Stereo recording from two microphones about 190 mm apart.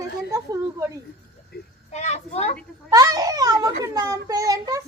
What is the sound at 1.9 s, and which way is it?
Speech, 35° left (ahead or behind).